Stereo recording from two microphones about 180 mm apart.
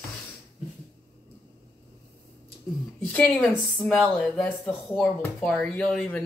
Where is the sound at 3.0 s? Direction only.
5° left (ahead or behind).